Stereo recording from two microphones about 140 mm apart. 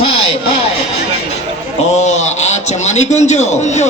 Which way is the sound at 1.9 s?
55° left (ahead or behind).